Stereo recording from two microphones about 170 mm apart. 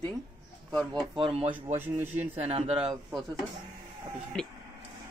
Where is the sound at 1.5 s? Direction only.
15° right (ahead or behind).